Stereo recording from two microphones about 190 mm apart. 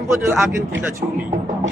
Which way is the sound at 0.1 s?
15° right (ahead or behind).